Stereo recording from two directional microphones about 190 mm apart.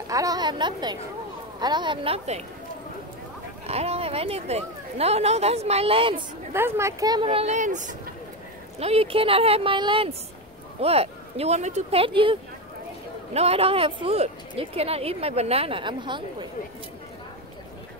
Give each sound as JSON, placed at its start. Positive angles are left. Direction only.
{"t": 0.1, "sound": "a woman's voice", "side_deg": -20}
{"t": 3.6, "sound": "speech", "side_deg": -35}
{"t": 6.5, "sound": "speech", "side_deg": -15}